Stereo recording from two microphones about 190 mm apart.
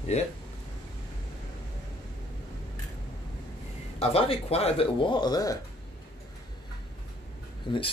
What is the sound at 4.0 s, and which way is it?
Speech, 30° left (ahead or behind).